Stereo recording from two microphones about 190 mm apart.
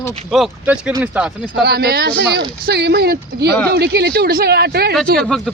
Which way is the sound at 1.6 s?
55° right (ahead or behind).